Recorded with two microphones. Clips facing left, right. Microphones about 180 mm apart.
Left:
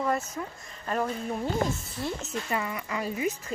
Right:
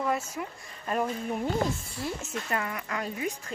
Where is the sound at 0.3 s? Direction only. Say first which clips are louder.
Even; 10° right (ahead or behind).